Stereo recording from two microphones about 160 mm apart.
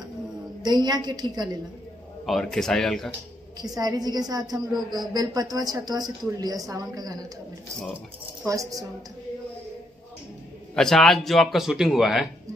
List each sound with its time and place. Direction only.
0.7 s a woman's voice: 25° right (ahead or behind)
2.2 s speech: centre (ahead or behind)
3.6 s a woman's voice: 25° right (ahead or behind)
8.5 s a woman's voice: 20° right (ahead or behind)
10.7 s speech: 5° left (ahead or behind)